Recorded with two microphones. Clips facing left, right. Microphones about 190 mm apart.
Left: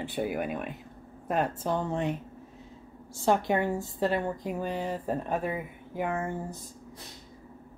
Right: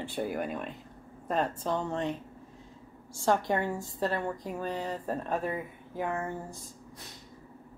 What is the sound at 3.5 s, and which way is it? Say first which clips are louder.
A woman's voice: left 3 dB; 20° left (ahead or behind).